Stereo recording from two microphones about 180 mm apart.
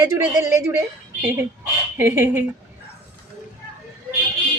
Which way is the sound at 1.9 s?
15° right (ahead or behind).